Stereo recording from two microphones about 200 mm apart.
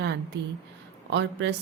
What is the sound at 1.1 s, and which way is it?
Speech, 65° right (ahead or behind).